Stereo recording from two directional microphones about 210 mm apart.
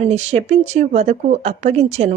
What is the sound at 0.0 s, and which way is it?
A woman's voice, 30° right (ahead or behind).